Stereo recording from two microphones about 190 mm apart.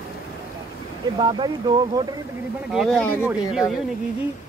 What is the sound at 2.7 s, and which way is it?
Speech, 5° left (ahead or behind).